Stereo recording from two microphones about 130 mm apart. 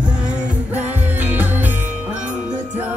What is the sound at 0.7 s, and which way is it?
Music, 15° right (ahead or behind).